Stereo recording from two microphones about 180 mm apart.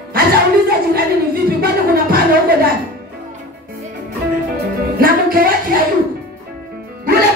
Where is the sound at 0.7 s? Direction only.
60° right (ahead or behind).